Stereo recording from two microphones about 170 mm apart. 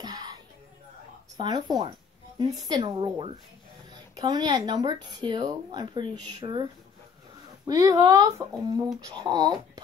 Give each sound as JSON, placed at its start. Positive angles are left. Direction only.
{"t": 0.0, "sound": "music", "side_deg": -25}
{"t": 1.3, "sound": "a woman's voice", "side_deg": -25}